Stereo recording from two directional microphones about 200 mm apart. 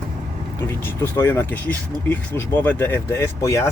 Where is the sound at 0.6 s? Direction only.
10° left (ahead or behind).